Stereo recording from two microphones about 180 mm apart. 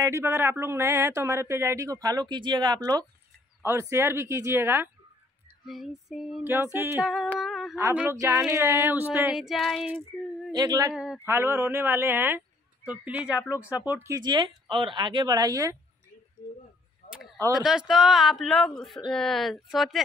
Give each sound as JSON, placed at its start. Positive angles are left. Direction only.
{"t": 0.0, "sound": "speech", "side_deg": -15}
{"t": 5.7, "sound": "speech", "side_deg": 0}
{"t": 9.1, "sound": "speech", "side_deg": -5}
{"t": 10.5, "sound": "speech", "side_deg": -20}
{"t": 10.9, "sound": "speech", "side_deg": -5}
{"t": 17.0, "sound": "a sound", "side_deg": 40}
{"t": 17.5, "sound": "speech", "side_deg": 0}